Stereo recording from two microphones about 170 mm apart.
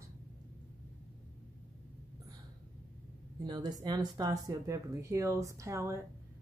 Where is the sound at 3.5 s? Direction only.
25° right (ahead or behind).